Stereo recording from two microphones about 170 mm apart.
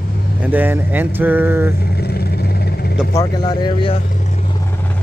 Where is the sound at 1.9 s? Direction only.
70° left (ahead or behind).